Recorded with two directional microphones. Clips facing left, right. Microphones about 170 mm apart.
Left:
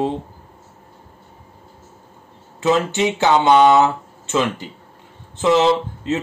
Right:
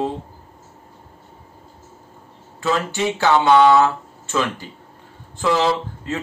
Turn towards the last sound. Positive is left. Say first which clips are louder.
# left 4 dB
turn(degrees=20)  # may be behind; listen again after turning